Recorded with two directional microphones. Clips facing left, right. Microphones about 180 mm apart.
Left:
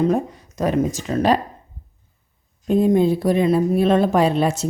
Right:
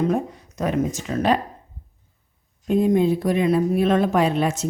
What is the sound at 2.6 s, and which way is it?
Speech, 35° left (ahead or behind).